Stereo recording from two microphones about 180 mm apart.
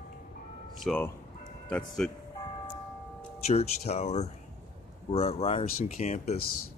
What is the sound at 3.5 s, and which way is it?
Speech, 35° left (ahead or behind).